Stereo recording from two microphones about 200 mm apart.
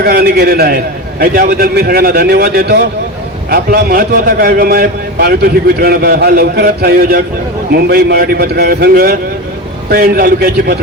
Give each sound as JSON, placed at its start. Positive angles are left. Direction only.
{"t": 0.0, "sound": "a man's voice", "side_deg": -50}